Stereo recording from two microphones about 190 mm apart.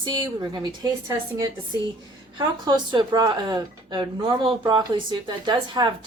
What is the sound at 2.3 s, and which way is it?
Speech, 20° right (ahead or behind).